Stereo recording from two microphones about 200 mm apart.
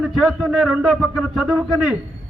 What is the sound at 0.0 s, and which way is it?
A man's voice, centre (ahead or behind).